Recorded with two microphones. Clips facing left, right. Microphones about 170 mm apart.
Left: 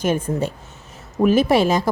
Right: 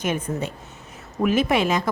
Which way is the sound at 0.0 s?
30° left (ahead or behind).